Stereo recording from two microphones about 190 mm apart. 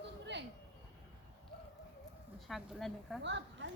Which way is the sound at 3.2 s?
70° right (ahead or behind).